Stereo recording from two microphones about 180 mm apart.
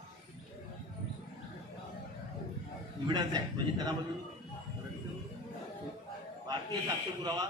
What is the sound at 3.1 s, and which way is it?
Speech, 25° right (ahead or behind).